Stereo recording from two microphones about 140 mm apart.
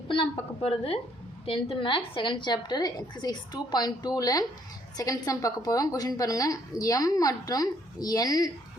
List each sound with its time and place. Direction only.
0.1 s a woman's voice: 40° left (ahead or behind)